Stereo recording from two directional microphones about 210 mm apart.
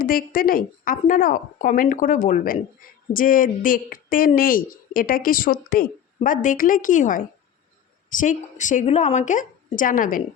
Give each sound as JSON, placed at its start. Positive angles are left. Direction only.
{"t": 0.0, "sound": "a woman's voice", "side_deg": 45}